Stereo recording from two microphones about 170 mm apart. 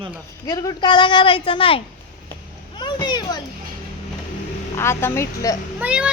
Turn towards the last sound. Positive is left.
turn(degrees=-5)  # may be behind; listen again after turning